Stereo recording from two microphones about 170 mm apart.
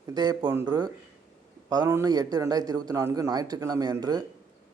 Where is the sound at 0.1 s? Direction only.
25° right (ahead or behind).